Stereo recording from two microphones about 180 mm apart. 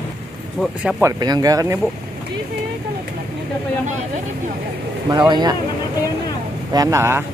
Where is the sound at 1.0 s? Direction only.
20° right (ahead or behind).